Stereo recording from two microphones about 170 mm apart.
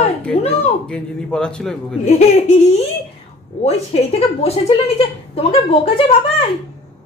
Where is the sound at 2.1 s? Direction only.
40° left (ahead or behind).